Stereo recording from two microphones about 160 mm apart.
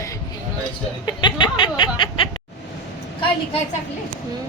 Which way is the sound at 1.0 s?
30° left (ahead or behind).